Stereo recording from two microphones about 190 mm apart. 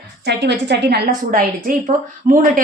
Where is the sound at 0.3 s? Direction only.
65° right (ahead or behind).